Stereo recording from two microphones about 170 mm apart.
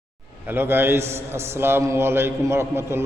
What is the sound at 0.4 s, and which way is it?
A man's voice, 10° right (ahead or behind).